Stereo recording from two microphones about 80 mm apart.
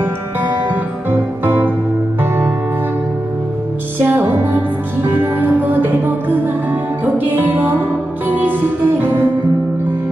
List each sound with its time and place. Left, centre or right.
0.7 s music: right
4.0 s music: right